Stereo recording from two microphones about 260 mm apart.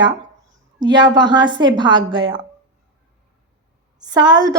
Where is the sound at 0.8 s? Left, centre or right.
Centre.